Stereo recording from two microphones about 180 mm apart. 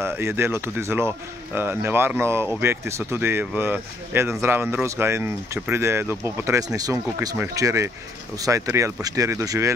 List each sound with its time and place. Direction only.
0.0 s speech: 15° right (ahead or behind)